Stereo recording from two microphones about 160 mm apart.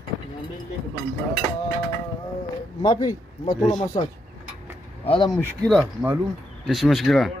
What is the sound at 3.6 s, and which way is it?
Speech, centre (ahead or behind).